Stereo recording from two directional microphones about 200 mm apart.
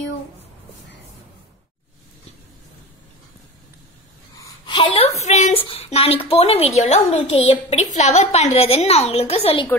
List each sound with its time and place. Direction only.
4.4 s a woman's voice: 20° left (ahead or behind)